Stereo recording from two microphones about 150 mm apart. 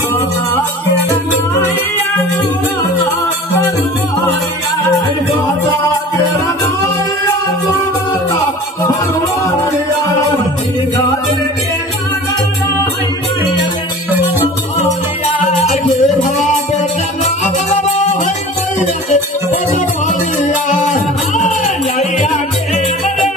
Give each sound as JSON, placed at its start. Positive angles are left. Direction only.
{"t": 15.7, "sound": "music", "side_deg": 55}
{"t": 19.7, "sound": "music", "side_deg": 55}